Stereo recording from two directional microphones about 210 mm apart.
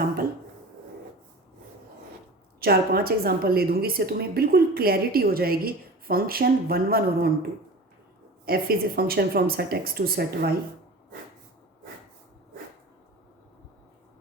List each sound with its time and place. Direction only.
2.6 s a woman's voice: 45° right (ahead or behind)
8.4 s a woman's voice: 45° right (ahead or behind)